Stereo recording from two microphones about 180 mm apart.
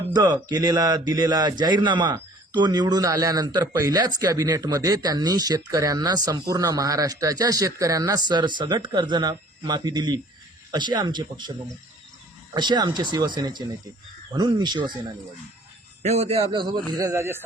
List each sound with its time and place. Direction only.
0.2 s speech: 20° right (ahead or behind)
12.5 s speech: 25° right (ahead or behind)
16.0 s a man's voice: 35° right (ahead or behind)
16.4 s speech: 25° right (ahead or behind)